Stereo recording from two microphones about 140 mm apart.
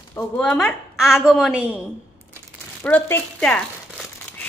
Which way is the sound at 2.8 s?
15° left (ahead or behind).